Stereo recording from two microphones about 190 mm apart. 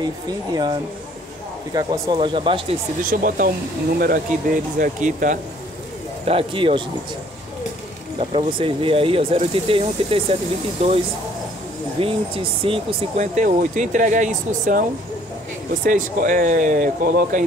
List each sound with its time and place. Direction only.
0.0 s speech: 20° right (ahead or behind)
3.1 s speech: 45° right (ahead or behind)
6.2 s speech: 30° right (ahead or behind)
8.2 s speech: 30° right (ahead or behind)
12.0 s speech: 30° right (ahead or behind); by 17.4 s 45° right (ahead or behind)